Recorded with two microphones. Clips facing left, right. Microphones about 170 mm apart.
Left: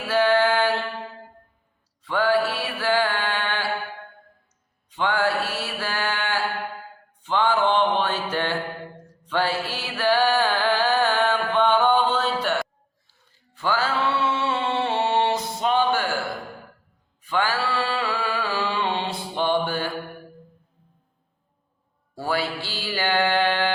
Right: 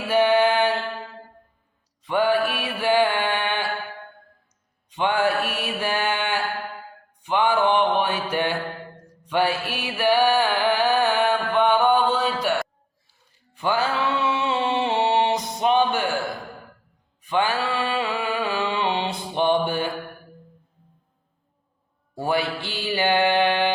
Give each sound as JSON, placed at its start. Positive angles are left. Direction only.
{"t": 0.1, "sound": "music", "side_deg": -20}
{"t": 2.0, "sound": "mantra", "side_deg": -20}
{"t": 4.9, "sound": "mantra", "side_deg": -20}
{"t": 9.2, "sound": "music", "side_deg": -15}
{"t": 17.2, "sound": "music", "side_deg": -20}
{"t": 22.1, "sound": "mantra", "side_deg": -20}